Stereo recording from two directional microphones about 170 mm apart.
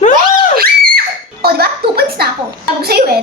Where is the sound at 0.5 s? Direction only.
65° right (ahead or behind).